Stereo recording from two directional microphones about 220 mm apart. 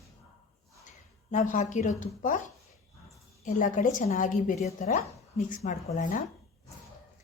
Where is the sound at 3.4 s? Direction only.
35° left (ahead or behind).